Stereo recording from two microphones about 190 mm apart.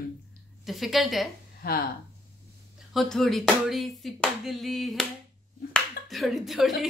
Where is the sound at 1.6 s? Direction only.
50° left (ahead or behind).